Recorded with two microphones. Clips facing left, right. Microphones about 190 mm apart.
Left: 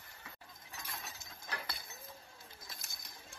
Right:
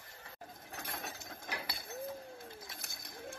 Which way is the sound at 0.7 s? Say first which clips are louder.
Right 4 dB; 55° right (ahead or behind).